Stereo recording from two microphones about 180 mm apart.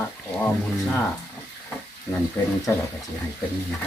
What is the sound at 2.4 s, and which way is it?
Speech, 15° left (ahead or behind).